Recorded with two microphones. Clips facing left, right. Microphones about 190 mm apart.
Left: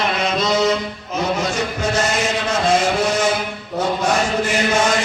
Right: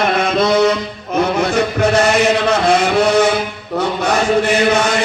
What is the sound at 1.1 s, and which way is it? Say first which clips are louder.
Chant: right 6 dB; 60° right (ahead or behind).